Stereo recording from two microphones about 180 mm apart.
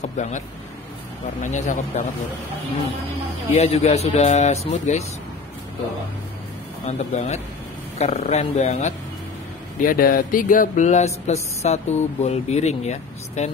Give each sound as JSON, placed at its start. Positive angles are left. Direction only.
{"t": 0.0, "sound": "speech", "side_deg": 40}
{"t": 1.4, "sound": "speech", "side_deg": 45}
{"t": 3.5, "sound": "speech", "side_deg": 35}
{"t": 6.9, "sound": "speech", "side_deg": 40}
{"t": 9.8, "sound": "speech", "side_deg": 50}